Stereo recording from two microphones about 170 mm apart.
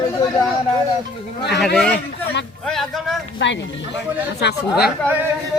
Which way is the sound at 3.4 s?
90° left.